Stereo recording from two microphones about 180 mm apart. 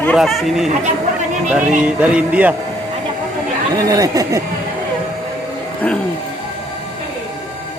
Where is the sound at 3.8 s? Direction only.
20° right (ahead or behind).